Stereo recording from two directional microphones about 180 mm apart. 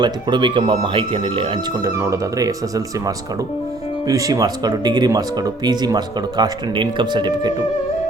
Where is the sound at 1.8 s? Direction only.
15° right (ahead or behind).